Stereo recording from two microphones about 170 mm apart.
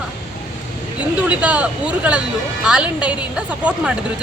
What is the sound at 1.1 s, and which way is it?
A woman's voice, 10° right (ahead or behind).